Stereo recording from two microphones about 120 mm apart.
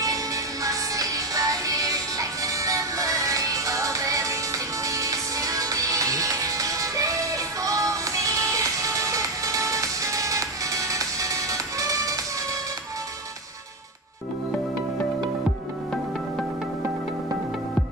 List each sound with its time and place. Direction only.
0.0 s music: 30° right (ahead or behind)